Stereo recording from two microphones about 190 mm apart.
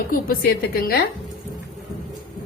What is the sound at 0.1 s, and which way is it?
Speech, 50° left (ahead or behind).